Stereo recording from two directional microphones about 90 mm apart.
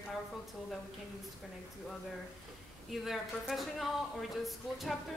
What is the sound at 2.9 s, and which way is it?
Speech, centre (ahead or behind).